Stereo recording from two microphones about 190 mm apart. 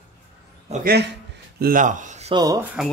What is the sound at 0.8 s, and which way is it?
Speech, 60° right (ahead or behind).